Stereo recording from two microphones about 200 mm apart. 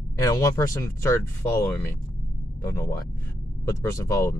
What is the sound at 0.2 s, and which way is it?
Speech, 15° left (ahead or behind).